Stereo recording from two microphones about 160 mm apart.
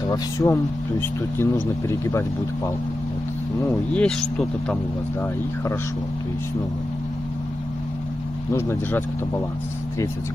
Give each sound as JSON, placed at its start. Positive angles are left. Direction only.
{"t": 0.1, "sound": "speech", "side_deg": 15}
{"t": 3.9, "sound": "speech", "side_deg": 5}
{"t": 8.5, "sound": "speech", "side_deg": 15}